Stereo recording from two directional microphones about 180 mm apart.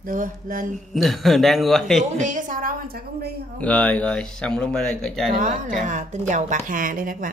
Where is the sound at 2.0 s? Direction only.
45° right (ahead or behind); by 3.4 s 60° right (ahead or behind).